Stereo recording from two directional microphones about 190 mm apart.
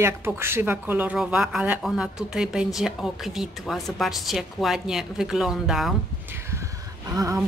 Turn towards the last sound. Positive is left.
turn(degrees=-15)  # may be behind; listen again after turning